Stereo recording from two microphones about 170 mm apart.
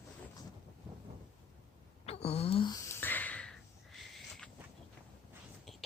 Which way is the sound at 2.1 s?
35° left (ahead or behind).